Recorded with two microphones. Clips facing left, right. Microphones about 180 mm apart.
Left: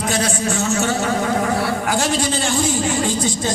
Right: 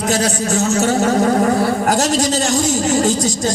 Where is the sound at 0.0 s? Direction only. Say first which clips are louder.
Right 3 dB; 40° right (ahead or behind).